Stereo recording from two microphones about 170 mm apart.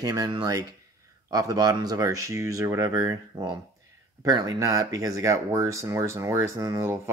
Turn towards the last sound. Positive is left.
turn(degrees=-15)  # may be behind; listen again after turning